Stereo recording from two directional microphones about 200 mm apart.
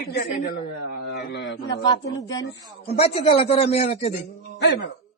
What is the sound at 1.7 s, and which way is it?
A man's voice, 20° left (ahead or behind).